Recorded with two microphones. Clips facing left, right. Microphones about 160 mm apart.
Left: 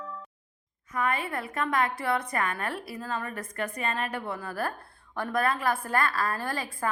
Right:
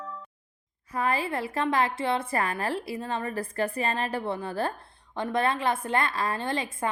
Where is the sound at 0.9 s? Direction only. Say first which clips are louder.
Right 2 dB; 30° right (ahead or behind).